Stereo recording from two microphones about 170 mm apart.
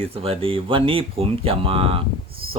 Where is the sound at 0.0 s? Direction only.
35° right (ahead or behind).